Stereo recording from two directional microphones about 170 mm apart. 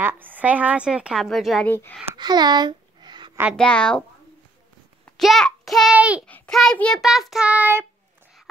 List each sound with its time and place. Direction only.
0.0 s a woman's voice: 10° right (ahead or behind)
1.7 s speech: 10° left (ahead or behind)
2.1 s a sound: 25° right (ahead or behind)
3.5 s child singing: 5° left (ahead or behind)
5.1 s a child's voice: centre (ahead or behind)
6.2 s child singing: 5° left (ahead or behind); by 7.8 s 10° right (ahead or behind)